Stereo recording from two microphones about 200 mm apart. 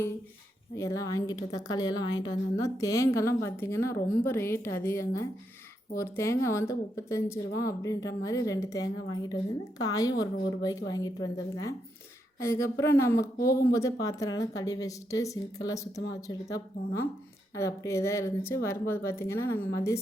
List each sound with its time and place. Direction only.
0.8 s a woman's voice: 15° left (ahead or behind)
12.4 s a woman's voice: 15° left (ahead or behind)